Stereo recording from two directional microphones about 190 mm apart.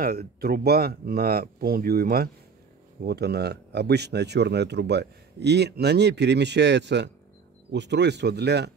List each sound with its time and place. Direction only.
0.0 s speech: 50° right (ahead or behind)